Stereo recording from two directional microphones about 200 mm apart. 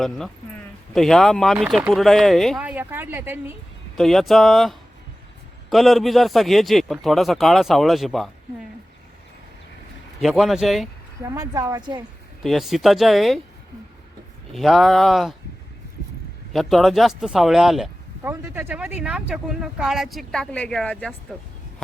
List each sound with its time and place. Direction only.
0.9 s speech: centre (ahead or behind)
3.9 s speech: centre (ahead or behind)
10.2 s speech: centre (ahead or behind)
11.2 s a woman's voice: 15° right (ahead or behind)
12.4 s speech: centre (ahead or behind)
14.5 s speech: centre (ahead or behind)
16.5 s speech: centre (ahead or behind)
18.2 s speech: 10° right (ahead or behind)